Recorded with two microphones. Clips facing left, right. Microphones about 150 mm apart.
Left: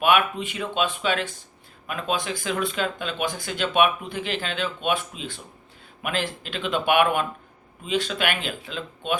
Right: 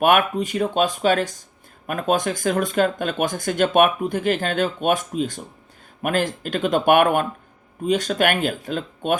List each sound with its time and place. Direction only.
0.0 s speech: 45° right (ahead or behind)